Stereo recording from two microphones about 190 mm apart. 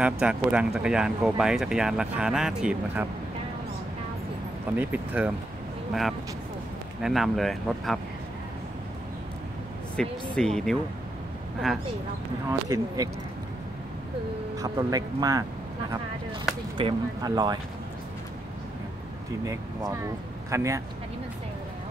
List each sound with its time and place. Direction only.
0.0 s speech: 5° right (ahead or behind)
4.7 s speech: 10° right (ahead or behind)
7.0 s speech: centre (ahead or behind)
10.0 s speech: centre (ahead or behind)
12.4 s speech: 20° right (ahead or behind)
14.6 s speech: 20° right (ahead or behind)
16.7 s speech: 25° right (ahead or behind)
19.4 s speech: 20° right (ahead or behind)